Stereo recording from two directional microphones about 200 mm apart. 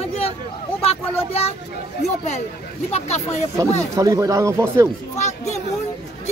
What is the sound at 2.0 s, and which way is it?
Speech, 35° left (ahead or behind).